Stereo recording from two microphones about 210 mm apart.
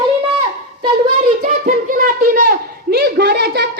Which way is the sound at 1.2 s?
35° right (ahead or behind).